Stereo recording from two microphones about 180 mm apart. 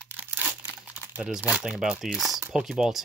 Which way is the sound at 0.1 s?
10° right (ahead or behind).